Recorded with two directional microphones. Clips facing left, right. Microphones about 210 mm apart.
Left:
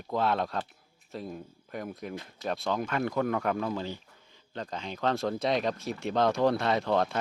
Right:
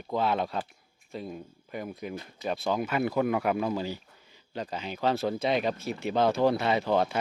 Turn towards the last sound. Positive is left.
turn(degrees=-5)  # may be behind; listen again after turning